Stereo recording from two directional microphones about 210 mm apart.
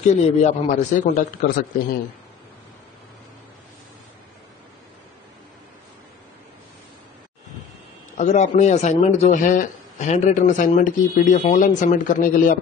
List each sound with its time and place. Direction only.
0.0 s a man's voice: 35° left (ahead or behind)
8.2 s a man's voice: 35° left (ahead or behind)